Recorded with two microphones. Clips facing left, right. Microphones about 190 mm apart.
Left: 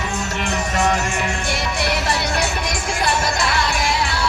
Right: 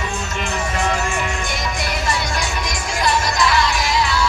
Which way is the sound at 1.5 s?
65° left (ahead or behind).